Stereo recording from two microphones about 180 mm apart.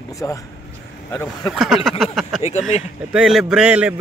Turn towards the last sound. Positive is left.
turn(degrees=-5)  # may be behind; listen again after turning